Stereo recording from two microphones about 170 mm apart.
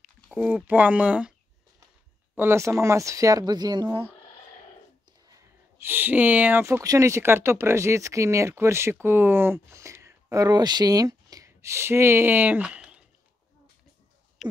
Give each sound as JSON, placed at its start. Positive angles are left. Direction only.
{"t": 0.0, "sound": "speech", "side_deg": -5}
{"t": 2.3, "sound": "speech", "side_deg": -15}
{"t": 5.3, "sound": "speech", "side_deg": -15}
{"t": 14.4, "sound": "a sound", "side_deg": 0}